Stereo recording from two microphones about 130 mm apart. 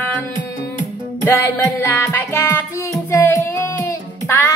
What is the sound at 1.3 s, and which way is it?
Music, 20° left (ahead or behind).